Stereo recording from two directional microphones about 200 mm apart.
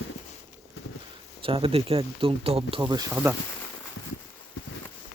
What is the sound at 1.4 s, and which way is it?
Speech, 25° right (ahead or behind).